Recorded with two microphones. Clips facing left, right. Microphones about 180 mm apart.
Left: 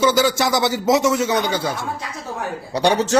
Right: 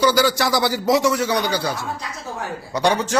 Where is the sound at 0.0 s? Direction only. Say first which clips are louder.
Left 1 dB; 20° left (ahead or behind).